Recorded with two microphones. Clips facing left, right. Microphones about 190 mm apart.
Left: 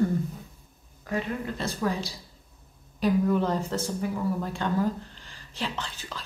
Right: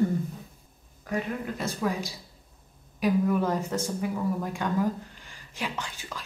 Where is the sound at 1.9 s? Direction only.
35° left (ahead or behind).